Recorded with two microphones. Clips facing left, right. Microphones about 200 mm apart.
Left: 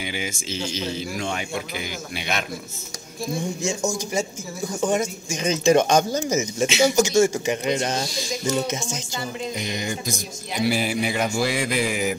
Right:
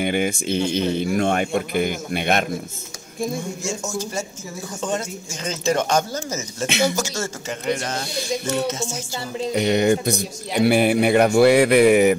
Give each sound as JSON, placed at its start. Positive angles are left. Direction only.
{"t": 0.0, "sound": "speech", "side_deg": -55}
{"t": 3.6, "sound": "speech", "side_deg": 15}
{"t": 8.0, "sound": "speech", "side_deg": -60}
{"t": 8.6, "sound": "speech", "side_deg": 15}
{"t": 9.5, "sound": "speech", "side_deg": -65}